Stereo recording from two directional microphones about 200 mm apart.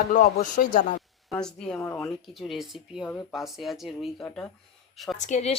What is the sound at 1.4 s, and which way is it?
Speech, 5° left (ahead or behind).